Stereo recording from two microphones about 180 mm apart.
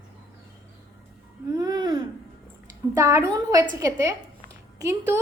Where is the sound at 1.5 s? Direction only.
20° right (ahead or behind).